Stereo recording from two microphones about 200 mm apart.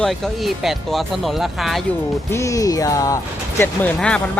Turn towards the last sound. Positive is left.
turn(degrees=5)  # may be behind; listen again after turning